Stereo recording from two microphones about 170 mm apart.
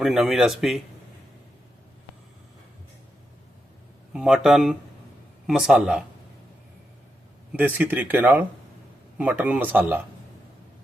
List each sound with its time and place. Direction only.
0.0 s speech: centre (ahead or behind)
4.1 s speech: centre (ahead or behind)
7.5 s speech: 10° right (ahead or behind)